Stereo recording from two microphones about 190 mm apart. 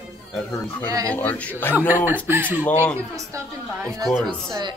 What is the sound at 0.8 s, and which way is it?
Speech, 20° right (ahead or behind).